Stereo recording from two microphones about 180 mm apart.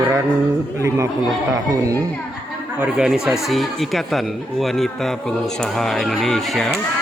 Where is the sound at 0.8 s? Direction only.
15° right (ahead or behind).